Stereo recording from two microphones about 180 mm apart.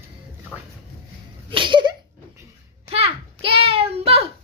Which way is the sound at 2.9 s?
35° right (ahead or behind).